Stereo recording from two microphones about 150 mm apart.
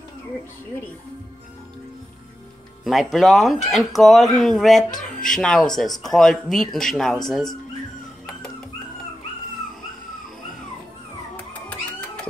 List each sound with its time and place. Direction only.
2.8 s speech: centre (ahead or behind)